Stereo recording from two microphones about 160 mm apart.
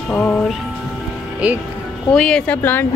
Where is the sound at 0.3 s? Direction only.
5° left (ahead or behind).